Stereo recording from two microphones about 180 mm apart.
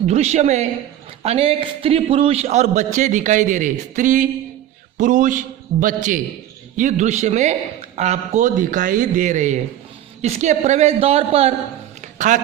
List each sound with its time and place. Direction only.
0.0 s a man's voice: 40° right (ahead or behind)